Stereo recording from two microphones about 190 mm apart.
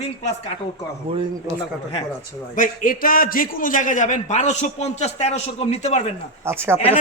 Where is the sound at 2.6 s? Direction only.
45° left (ahead or behind).